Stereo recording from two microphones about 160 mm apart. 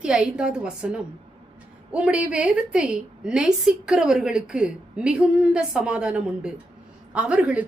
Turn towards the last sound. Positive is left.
turn(degrees=-10)  # may be behind; listen again after turning